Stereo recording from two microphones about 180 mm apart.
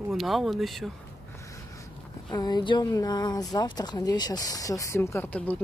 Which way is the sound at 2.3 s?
20° left (ahead or behind).